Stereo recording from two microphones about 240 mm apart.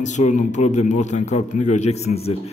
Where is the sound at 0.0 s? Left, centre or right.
Left.